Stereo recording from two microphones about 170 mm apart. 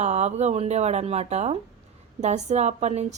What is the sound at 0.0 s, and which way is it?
A woman's voice, 40° right (ahead or behind).